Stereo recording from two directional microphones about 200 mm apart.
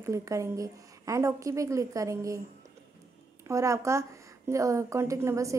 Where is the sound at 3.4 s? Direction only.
15° right (ahead or behind).